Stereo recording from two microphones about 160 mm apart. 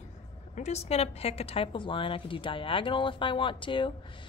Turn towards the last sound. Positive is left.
turn(degrees=30)  # may be behind; listen again after turning